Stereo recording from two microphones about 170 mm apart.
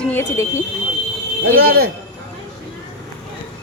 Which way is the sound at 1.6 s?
60° right (ahead or behind).